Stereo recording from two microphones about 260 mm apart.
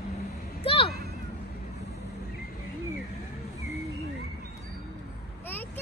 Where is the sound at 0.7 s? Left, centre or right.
Left.